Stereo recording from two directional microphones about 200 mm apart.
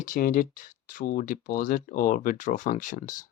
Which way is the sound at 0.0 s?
45° left (ahead or behind).